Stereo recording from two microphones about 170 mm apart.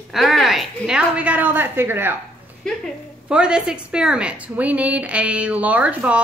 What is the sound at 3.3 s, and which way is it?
A woman's voice, 5° right (ahead or behind).